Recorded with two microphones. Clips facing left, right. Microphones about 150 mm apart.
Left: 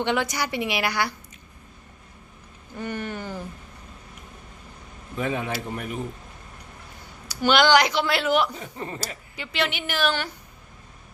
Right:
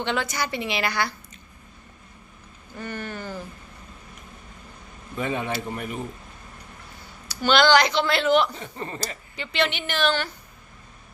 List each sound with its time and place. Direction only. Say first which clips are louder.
0.0 s speech: left 2 dB; 15° left (ahead or behind)
2.7 s speech: left 2 dB; 15° left (ahead or behind)
5.1 s speech: even; centre (ahead or behind)
7.3 s speech: even; 15° left (ahead or behind)